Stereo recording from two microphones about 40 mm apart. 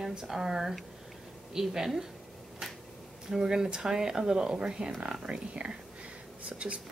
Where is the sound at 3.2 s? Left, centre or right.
Centre.